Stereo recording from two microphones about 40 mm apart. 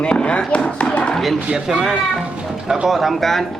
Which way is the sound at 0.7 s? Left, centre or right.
Left.